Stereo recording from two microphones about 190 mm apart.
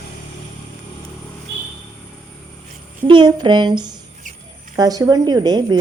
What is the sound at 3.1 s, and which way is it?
A woman's voice, 25° right (ahead or behind).